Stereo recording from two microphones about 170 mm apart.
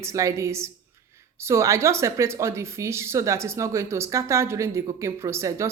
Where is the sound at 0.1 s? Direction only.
20° right (ahead or behind).